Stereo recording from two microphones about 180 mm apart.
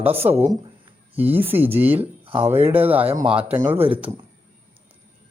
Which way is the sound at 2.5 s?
10° right (ahead or behind).